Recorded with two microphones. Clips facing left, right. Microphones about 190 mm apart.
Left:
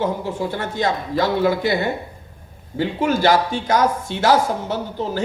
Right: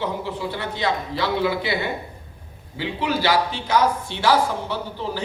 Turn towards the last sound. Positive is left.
turn(degrees=45)  # may be behind; listen again after turning